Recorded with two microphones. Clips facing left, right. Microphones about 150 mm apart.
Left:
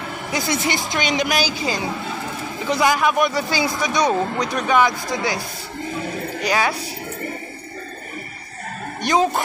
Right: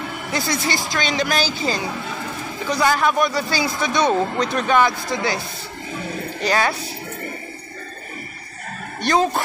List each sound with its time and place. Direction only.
0.3 s a man's voice: 20° left (ahead or behind)
6.4 s a man's voice: 10° left (ahead or behind)
9.0 s a man's voice: 20° left (ahead or behind)